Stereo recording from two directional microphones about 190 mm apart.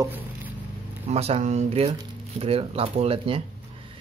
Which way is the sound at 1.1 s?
35° right (ahead or behind).